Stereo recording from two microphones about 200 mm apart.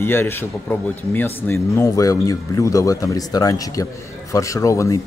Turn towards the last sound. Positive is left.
turn(degrees=15)  # may be behind; listen again after turning